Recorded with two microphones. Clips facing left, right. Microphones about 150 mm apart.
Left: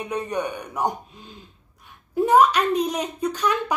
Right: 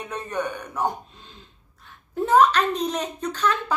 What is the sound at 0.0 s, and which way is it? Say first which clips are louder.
Speech: left 2 dB; 15° left (ahead or behind).